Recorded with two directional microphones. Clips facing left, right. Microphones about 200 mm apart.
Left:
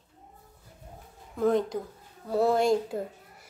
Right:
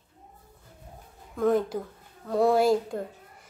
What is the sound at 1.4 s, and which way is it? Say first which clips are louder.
A woman's voice: right 1 dB; 5° right (ahead or behind).